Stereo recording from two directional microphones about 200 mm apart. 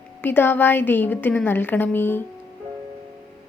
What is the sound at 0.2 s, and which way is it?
A woman's voice, 10° left (ahead or behind).